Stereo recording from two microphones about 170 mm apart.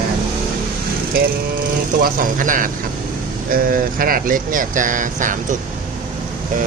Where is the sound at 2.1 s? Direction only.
50° right (ahead or behind).